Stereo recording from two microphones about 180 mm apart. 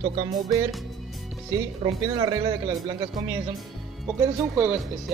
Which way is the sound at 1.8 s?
30° right (ahead or behind).